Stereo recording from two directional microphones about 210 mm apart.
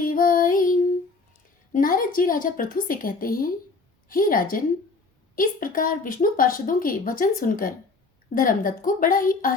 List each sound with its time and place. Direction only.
0.0 s music: 40° left (ahead or behind)
1.7 s a woman's voice: 40° left (ahead or behind)